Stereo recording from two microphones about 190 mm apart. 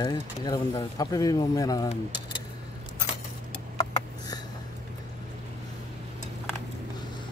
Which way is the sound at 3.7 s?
20° left (ahead or behind).